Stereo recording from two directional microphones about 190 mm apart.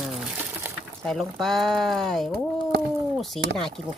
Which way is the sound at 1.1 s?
Centre (ahead or behind).